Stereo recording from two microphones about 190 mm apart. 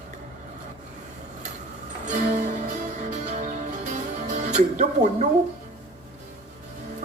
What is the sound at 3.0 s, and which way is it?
Music, 40° right (ahead or behind).